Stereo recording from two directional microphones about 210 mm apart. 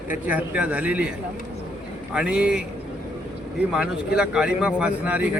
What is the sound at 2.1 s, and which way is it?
Speech, 5° right (ahead or behind).